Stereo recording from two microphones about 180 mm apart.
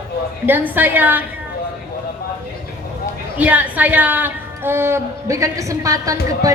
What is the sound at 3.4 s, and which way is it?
A woman's voice, 10° right (ahead or behind).